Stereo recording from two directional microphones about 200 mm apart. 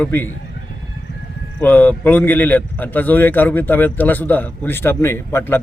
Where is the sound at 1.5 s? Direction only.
5° left (ahead or behind).